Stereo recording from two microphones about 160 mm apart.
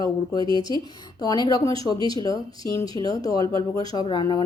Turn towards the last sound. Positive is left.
turn(degrees=30)  # may be behind; listen again after turning